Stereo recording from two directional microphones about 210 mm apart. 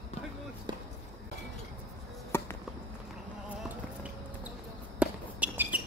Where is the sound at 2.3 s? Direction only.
10° left (ahead or behind).